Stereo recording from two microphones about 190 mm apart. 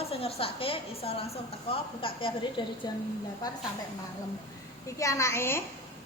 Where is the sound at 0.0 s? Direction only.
30° left (ahead or behind).